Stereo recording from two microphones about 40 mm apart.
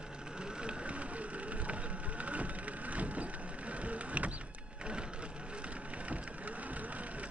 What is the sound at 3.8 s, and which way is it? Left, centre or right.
Mechanisms, right.